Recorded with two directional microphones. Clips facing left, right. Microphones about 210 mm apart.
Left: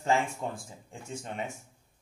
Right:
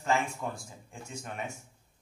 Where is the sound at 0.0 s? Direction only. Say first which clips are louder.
Left 2 dB; 25° left (ahead or behind).